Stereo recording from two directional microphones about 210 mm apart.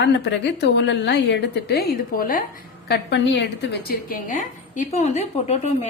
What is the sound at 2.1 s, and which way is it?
Speech, 40° left (ahead or behind).